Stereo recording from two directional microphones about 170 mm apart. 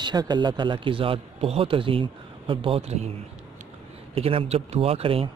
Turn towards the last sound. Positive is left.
turn(degrees=-35)  # may be behind; listen again after turning